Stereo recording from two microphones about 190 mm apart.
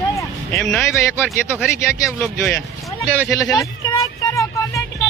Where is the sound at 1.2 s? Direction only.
10° right (ahead or behind).